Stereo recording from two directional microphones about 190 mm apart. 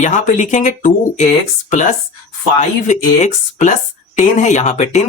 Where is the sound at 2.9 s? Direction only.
40° left (ahead or behind).